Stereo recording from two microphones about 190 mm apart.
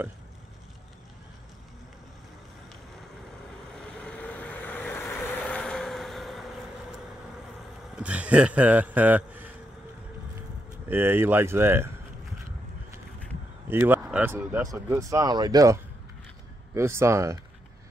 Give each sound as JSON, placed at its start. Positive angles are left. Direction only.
{"t": 3.7, "sound": "vehicle", "side_deg": 5}
{"t": 7.9, "sound": "a man's voice", "side_deg": -5}
{"t": 10.9, "sound": "speech", "side_deg": -10}
{"t": 13.7, "sound": "speech", "side_deg": -10}